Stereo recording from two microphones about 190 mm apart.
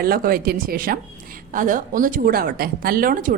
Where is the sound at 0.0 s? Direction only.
50° right (ahead or behind).